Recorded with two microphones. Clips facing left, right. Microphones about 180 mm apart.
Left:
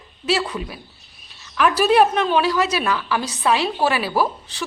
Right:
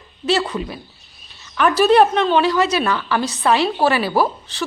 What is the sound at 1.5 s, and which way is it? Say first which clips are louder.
A woman's voice: right 3 dB; 5° left (ahead or behind).